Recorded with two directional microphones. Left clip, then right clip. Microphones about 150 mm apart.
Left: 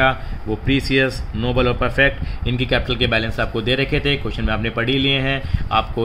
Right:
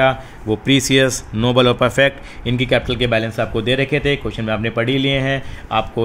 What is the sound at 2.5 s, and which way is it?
Speech, 30° right (ahead or behind).